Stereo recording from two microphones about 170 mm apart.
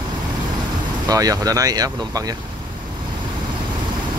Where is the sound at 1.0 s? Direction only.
20° right (ahead or behind).